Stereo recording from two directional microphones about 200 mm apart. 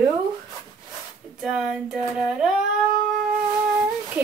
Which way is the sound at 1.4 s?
5° right (ahead or behind).